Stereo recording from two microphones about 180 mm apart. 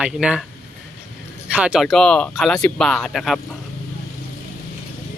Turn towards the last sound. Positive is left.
turn(degrees=0)  # may be behind; listen again after turning